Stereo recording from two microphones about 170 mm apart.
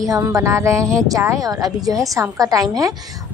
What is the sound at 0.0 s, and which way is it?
Speech, 20° right (ahead or behind).